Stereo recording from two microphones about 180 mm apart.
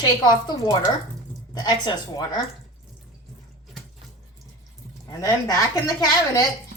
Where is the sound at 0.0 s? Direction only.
25° left (ahead or behind).